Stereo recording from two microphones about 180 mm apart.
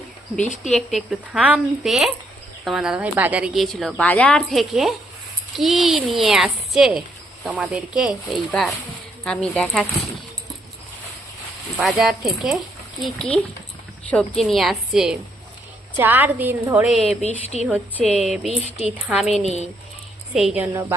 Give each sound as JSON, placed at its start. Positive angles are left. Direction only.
{"t": 0.4, "sound": "speech", "side_deg": 40}
{"t": 0.7, "sound": "a woman's voice", "side_deg": 0}
{"t": 11.8, "sound": "a woman's voice", "side_deg": 0}
{"t": 19.4, "sound": "speech", "side_deg": -35}
{"t": 20.3, "sound": "a woman's voice", "side_deg": -5}